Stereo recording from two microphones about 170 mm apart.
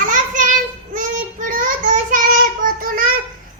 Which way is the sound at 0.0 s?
50° right (ahead or behind).